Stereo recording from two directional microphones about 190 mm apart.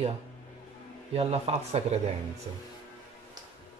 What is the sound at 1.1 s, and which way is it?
Speech, 35° right (ahead or behind).